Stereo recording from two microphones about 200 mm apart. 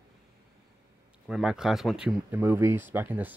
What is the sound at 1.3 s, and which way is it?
Speech, 5° right (ahead or behind).